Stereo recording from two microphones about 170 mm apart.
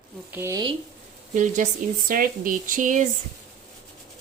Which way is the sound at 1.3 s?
50° right (ahead or behind).